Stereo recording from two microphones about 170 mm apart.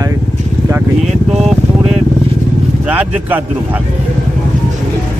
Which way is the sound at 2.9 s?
10° right (ahead or behind).